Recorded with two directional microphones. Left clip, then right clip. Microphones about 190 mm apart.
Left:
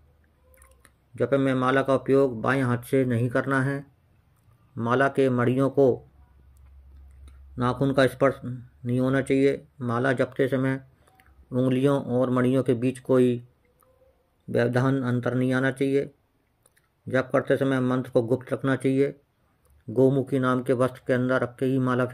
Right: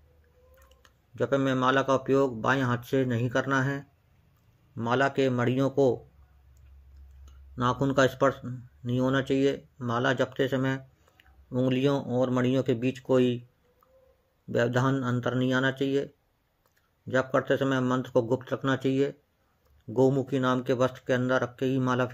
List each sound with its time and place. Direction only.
0.8 s speech: 30° left (ahead or behind)
7.2 s a sound: 30° left (ahead or behind)
8.2 s speech: 30° left (ahead or behind)
14.5 s speech: 25° left (ahead or behind)
17.1 s speech: 30° left (ahead or behind)